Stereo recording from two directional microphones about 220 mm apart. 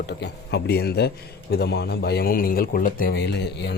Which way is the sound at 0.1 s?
50° left (ahead or behind).